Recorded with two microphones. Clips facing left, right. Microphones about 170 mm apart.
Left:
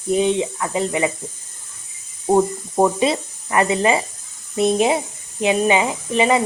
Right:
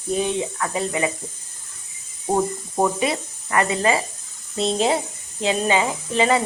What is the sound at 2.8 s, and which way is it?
Speech, 25° left (ahead or behind).